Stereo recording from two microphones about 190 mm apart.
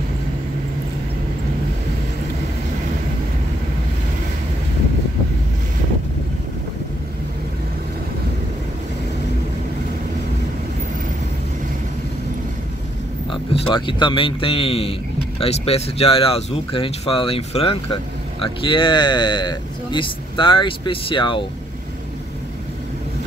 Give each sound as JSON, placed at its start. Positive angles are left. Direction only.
{"t": 13.3, "sound": "a man's voice", "side_deg": 25}